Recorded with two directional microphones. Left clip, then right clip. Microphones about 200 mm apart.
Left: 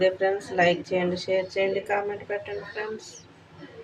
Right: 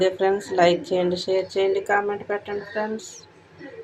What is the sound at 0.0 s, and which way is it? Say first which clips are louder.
Speech: right 2 dB; 15° right (ahead or behind).